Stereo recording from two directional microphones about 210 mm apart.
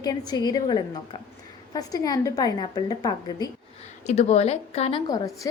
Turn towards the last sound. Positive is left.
turn(degrees=15)  # may be behind; listen again after turning